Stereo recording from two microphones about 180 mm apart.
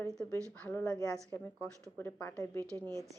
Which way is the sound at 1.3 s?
10° left (ahead or behind).